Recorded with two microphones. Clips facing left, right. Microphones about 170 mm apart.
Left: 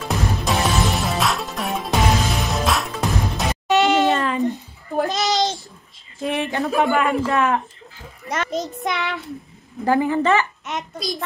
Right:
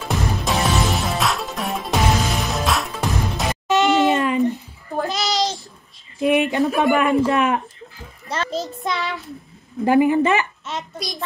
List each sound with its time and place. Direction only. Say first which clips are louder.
0.0 s music: even; centre (ahead or behind)
3.7 s a sound: even; 15° left (ahead or behind)
4.1 s a sound: right 2 dB; 15° right (ahead or behind)
5.0 s child singing: left 1 dB; 20° left (ahead or behind)
6.2 s speech: right 5 dB; 15° right (ahead or behind)
8.3 s child singing: left 1 dB; 20° left (ahead or behind)
9.8 s a woman's voice: right 2 dB; 15° right (ahead or behind)